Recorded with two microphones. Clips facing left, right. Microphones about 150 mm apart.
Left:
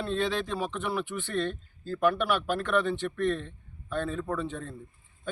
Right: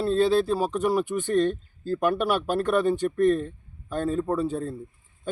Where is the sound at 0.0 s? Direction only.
35° right (ahead or behind).